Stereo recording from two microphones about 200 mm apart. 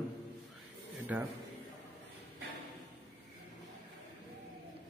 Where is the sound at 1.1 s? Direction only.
10° right (ahead or behind).